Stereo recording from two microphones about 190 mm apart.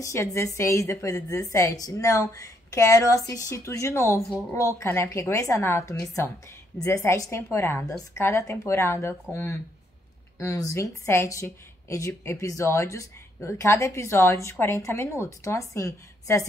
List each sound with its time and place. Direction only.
0.0 s a woman's voice: 15° left (ahead or behind)
4.2 s a woman's voice: centre (ahead or behind)
4.7 s a woman's voice: 15° left (ahead or behind)